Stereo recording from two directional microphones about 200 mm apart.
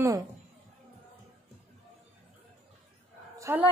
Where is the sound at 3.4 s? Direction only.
10° right (ahead or behind).